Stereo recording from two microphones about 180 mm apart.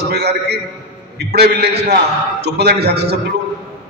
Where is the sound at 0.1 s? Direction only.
65° right (ahead or behind).